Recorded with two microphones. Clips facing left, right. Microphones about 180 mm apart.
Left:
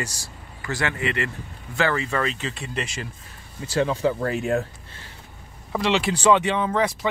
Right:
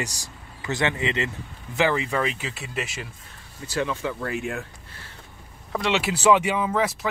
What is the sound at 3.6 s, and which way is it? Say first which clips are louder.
Speech: left 5 dB; 30° left (ahead or behind).